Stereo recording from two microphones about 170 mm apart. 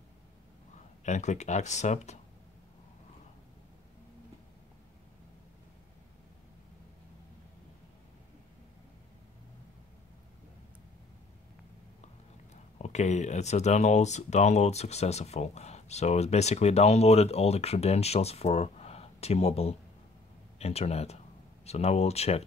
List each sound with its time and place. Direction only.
1.0 s speech: 45° left (ahead or behind)
12.7 s speech: 40° left (ahead or behind)